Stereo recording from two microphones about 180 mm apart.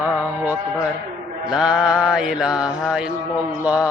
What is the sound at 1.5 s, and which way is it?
Mantra, 5° right (ahead or behind).